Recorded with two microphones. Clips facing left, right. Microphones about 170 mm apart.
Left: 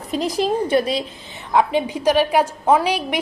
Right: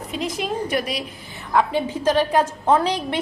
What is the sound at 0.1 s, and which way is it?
Speech, 35° left (ahead or behind).